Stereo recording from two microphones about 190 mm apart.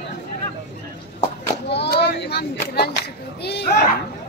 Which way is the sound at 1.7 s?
60° left (ahead or behind).